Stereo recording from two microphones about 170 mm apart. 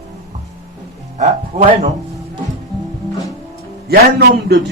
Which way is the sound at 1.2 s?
40° right (ahead or behind).